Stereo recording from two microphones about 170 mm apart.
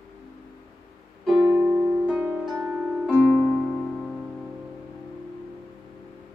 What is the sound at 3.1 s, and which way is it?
Music, 5° left (ahead or behind).